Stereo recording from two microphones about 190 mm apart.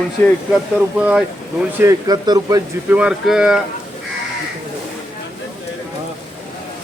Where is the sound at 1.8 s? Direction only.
20° right (ahead or behind).